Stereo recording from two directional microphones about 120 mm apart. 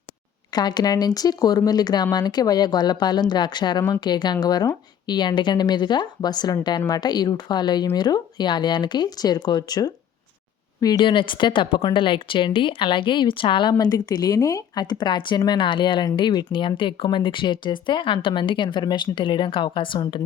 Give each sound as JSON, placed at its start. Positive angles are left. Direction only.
{"t": 0.5, "sound": "speech", "side_deg": 35}